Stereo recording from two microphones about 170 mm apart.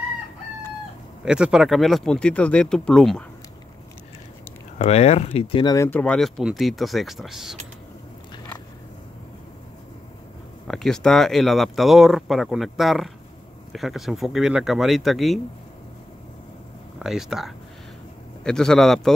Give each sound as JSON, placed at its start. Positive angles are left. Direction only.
{"t": 1.2, "sound": "speech", "side_deg": -5}
{"t": 4.7, "sound": "speech", "side_deg": 40}
{"t": 5.8, "sound": "speech", "side_deg": 10}
{"t": 10.7, "sound": "speech", "side_deg": 5}
{"t": 17.0, "sound": "speech", "side_deg": 0}